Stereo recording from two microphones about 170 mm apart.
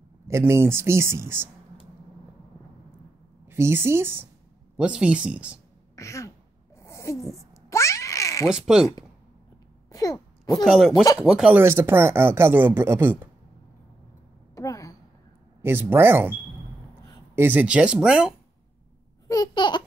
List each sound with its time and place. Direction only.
0.3 s speech: 15° right (ahead or behind)
3.4 s speech: 15° right (ahead or behind)
5.9 s a sound: 20° left (ahead or behind)
8.5 s speech: 5° right (ahead or behind)
9.8 s a sound: 20° left (ahead or behind)
10.6 s speech: centre (ahead or behind)
14.5 s a sound: 20° left (ahead or behind)
15.6 s speech: 10° right (ahead or behind)
17.4 s speech: 10° right (ahead or behind)
19.2 s babbling: 20° left (ahead or behind)